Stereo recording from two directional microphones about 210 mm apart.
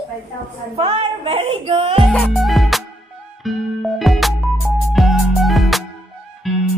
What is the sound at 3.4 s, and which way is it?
Speech, centre (ahead or behind).